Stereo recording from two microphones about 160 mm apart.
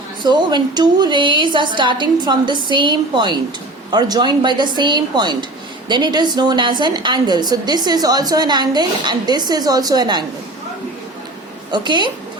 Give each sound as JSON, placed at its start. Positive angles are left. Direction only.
{"t": 0.2, "sound": "a woman's voice", "side_deg": -30}
{"t": 11.7, "sound": "a woman's voice", "side_deg": -30}